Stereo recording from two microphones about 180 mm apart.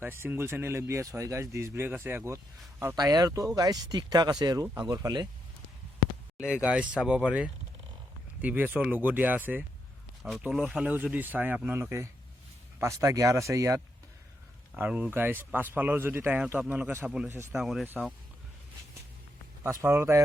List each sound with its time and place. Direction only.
0.0 s speech: 10° right (ahead or behind)
6.3 s speech: 5° right (ahead or behind)
19.6 s speech: 15° right (ahead or behind)